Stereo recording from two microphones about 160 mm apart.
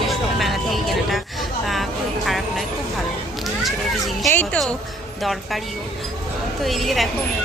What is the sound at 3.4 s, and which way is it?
Speech, centre (ahead or behind).